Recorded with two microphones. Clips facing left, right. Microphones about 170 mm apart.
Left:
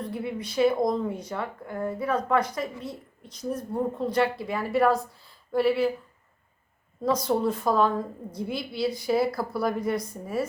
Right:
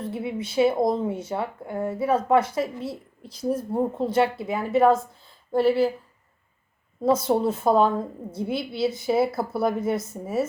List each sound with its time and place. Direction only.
0.3 s speech: 25° right (ahead or behind)
7.0 s speech: 25° right (ahead or behind)